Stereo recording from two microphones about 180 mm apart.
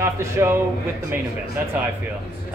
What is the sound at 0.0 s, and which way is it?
Speech, 15° right (ahead or behind).